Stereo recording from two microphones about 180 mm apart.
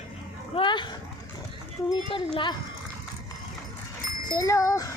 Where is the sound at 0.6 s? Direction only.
25° left (ahead or behind).